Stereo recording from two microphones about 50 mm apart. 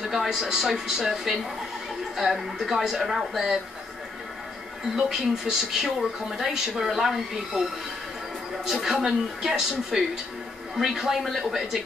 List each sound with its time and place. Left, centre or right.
0.0 s speech: centre
4.9 s speech: centre
8.6 s speech: centre